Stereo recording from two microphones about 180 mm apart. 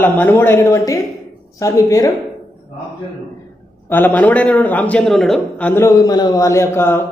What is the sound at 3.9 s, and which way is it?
A man's voice, 10° left (ahead or behind).